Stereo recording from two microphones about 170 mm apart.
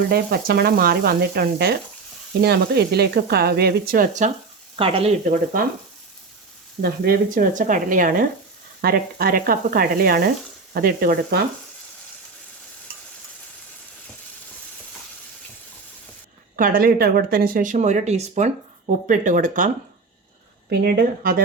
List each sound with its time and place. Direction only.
0.1 s sizzle: 65° right (ahead or behind)
4.8 s frying: 35° right (ahead or behind)
6.8 s speech: 65° right (ahead or behind)
8.8 s sizzle: 60° right (ahead or behind)
16.6 s speech: 55° right (ahead or behind)
20.7 s sizzle: 70° right (ahead or behind)